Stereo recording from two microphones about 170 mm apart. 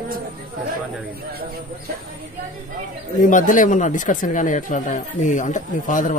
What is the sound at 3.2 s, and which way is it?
Speech, 50° left (ahead or behind).